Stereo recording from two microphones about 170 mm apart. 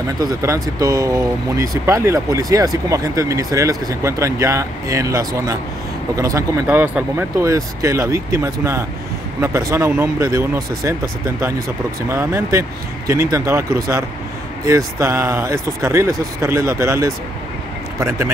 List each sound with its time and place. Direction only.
0.2 s speech: 20° right (ahead or behind)